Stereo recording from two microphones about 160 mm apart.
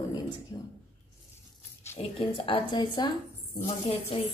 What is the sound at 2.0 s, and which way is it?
Speech, 35° left (ahead or behind).